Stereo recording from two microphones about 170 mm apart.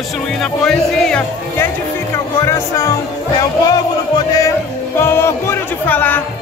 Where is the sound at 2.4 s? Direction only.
20° left (ahead or behind).